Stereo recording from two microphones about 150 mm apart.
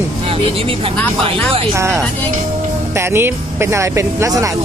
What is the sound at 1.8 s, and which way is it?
Speech, 20° right (ahead or behind).